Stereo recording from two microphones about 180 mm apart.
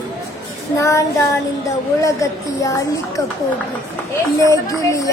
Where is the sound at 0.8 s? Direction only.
15° left (ahead or behind).